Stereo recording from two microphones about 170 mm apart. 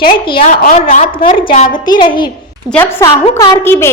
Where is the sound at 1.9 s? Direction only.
30° left (ahead or behind).